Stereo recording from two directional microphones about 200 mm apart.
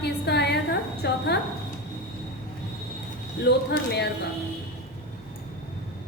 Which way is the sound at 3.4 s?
55° left (ahead or behind).